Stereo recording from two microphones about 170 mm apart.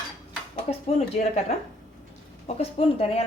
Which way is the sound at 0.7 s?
35° left (ahead or behind).